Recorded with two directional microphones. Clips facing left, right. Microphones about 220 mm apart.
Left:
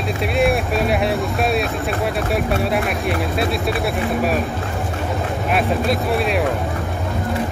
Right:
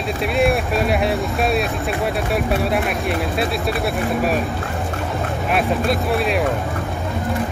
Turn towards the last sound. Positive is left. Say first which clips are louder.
# even
turn(degrees=0)  # may be behind; listen again after turning